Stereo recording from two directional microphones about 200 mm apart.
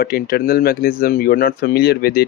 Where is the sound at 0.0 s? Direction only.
50° left (ahead or behind).